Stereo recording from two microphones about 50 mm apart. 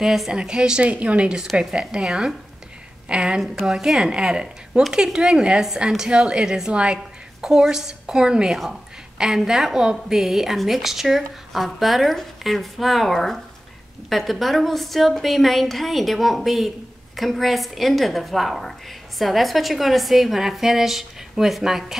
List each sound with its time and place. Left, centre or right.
0.0 s a woman's voice: centre
3.6 s a woman's voice: centre
4.0 s a woman's voice: centre